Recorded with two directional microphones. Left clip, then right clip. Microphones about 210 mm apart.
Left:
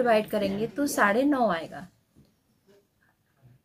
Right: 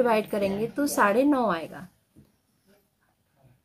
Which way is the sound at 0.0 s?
15° right (ahead or behind).